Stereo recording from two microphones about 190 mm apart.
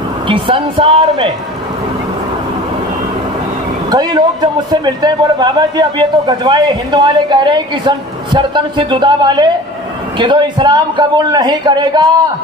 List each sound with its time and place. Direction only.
0.3 s a man's voice: 25° right (ahead or behind)
3.9 s a man's voice: 20° right (ahead or behind)